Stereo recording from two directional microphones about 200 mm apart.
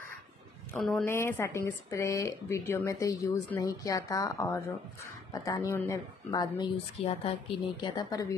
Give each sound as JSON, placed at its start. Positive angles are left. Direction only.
{"t": 1.0, "sound": "a woman's voice", "side_deg": 15}